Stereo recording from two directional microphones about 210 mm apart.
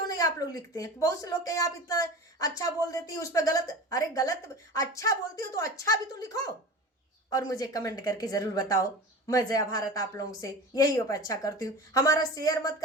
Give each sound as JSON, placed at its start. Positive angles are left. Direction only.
{"t": 0.1, "sound": "speech", "side_deg": 15}